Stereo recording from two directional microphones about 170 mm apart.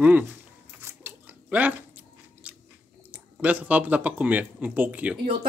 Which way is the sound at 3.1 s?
10° right (ahead or behind).